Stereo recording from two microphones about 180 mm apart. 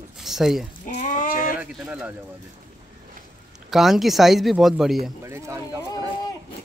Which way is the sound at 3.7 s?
Centre (ahead or behind).